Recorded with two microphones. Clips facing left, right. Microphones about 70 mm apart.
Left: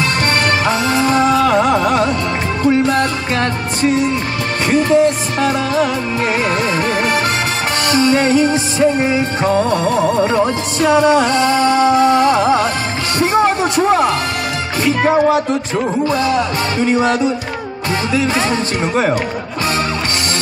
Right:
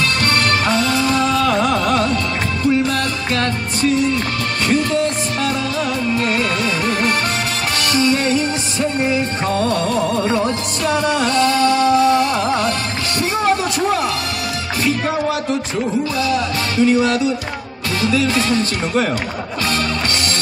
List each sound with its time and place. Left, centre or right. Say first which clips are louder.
0.0 s music: left 2 dB; left
2.6 s music: left 4 dB; left
13.2 s a sound: left 4 dB; left
15.0 s music: left 6 dB; left